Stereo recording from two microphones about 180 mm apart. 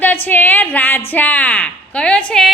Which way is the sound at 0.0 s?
10° left (ahead or behind).